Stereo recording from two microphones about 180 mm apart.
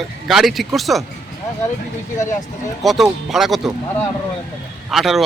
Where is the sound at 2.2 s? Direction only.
20° left (ahead or behind).